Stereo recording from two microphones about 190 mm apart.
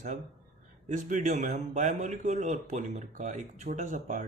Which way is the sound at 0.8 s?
40° right (ahead or behind).